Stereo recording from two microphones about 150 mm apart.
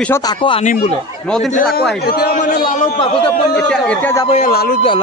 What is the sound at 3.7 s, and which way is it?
Speech, 10° left (ahead or behind).